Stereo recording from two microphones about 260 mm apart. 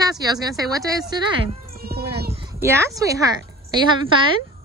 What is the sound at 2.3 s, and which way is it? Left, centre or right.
Speech, centre.